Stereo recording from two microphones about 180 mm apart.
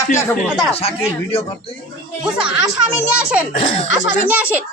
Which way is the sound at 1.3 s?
35° left (ahead or behind).